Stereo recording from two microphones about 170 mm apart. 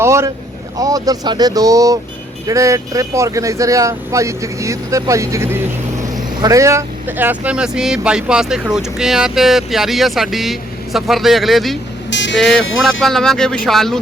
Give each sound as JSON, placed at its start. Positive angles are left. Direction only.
{"t": 0.0, "sound": "speech", "side_deg": -15}
{"t": 12.1, "sound": "speech", "side_deg": 90}
{"t": 12.4, "sound": "speech", "side_deg": 0}